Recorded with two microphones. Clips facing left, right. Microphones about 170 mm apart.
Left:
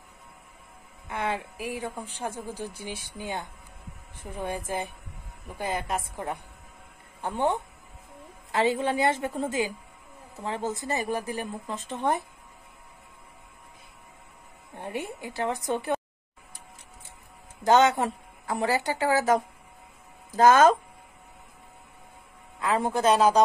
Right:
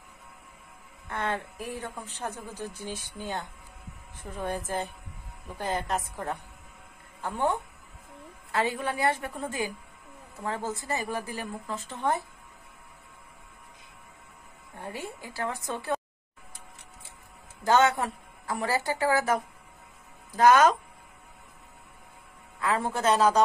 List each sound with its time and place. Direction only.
1.0 s speech: 10° left (ahead or behind)
14.8 s speech: 20° left (ahead or behind)
17.6 s speech: 20° left (ahead or behind)
22.6 s speech: 20° left (ahead or behind)